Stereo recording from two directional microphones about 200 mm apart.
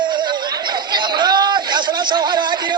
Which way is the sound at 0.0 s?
20° right (ahead or behind).